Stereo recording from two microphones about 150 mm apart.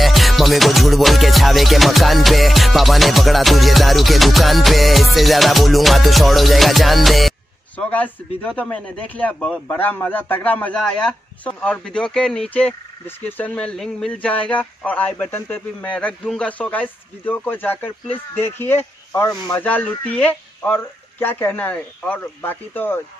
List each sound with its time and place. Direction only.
0.0 s music: centre (ahead or behind)
18.3 s speech: 15° left (ahead or behind)